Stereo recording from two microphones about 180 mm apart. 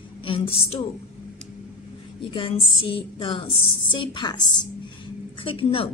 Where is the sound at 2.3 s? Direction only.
30° left (ahead or behind).